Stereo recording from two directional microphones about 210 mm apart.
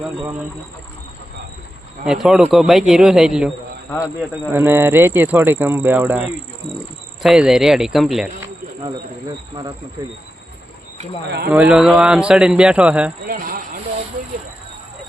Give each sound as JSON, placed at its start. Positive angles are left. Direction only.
{"t": 2.0, "sound": "speech", "side_deg": 0}
{"t": 11.4, "sound": "speech", "side_deg": -5}
{"t": 13.2, "sound": "speech", "side_deg": -40}